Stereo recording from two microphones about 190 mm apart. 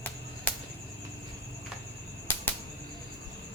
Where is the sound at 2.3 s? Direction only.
10° left (ahead or behind).